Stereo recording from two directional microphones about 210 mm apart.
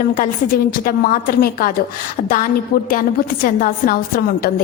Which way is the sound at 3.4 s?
45° left (ahead or behind).